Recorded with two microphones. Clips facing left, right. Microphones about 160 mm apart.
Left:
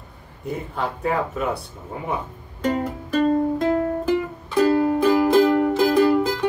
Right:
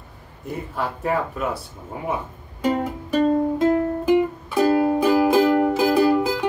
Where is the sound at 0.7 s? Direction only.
5° right (ahead or behind).